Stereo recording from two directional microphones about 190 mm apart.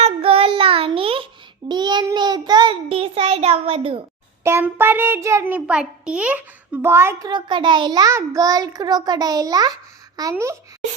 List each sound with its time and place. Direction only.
0.0 s child singing: 30° right (ahead or behind)
4.4 s a child's voice: 10° right (ahead or behind)